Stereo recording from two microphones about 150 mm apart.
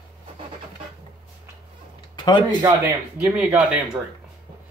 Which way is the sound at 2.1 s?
30° left (ahead or behind).